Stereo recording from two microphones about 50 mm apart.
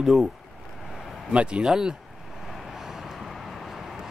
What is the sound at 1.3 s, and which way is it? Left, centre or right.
Speech, right.